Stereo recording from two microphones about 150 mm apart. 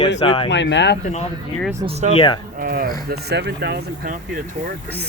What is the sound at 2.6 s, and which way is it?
Speech, 75° right (ahead or behind).